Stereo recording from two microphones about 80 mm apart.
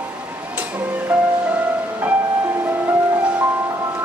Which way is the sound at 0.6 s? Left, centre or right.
Right.